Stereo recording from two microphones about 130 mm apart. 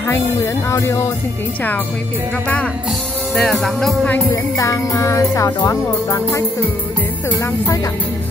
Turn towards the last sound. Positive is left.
turn(degrees=25)  # may be behind; listen again after turning